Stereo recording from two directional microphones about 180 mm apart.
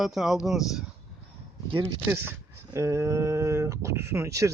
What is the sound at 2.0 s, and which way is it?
Speech, 15° right (ahead or behind).